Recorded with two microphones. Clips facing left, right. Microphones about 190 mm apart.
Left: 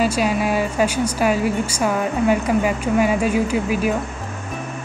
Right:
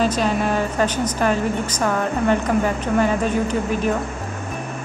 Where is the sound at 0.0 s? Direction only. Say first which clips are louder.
Left 1 dB; 10° left (ahead or behind).